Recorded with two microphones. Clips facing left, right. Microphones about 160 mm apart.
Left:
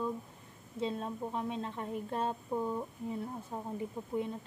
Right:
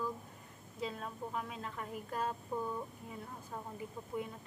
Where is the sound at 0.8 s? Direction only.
30° left (ahead or behind).